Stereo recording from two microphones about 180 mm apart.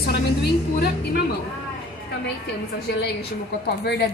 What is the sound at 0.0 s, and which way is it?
A woman's voice, 60° left (ahead or behind).